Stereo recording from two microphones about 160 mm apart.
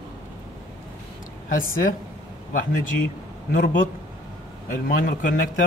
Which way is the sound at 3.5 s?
55° left (ahead or behind).